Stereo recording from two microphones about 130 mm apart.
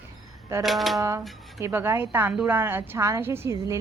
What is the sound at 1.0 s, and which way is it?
A woman's voice, 25° right (ahead or behind).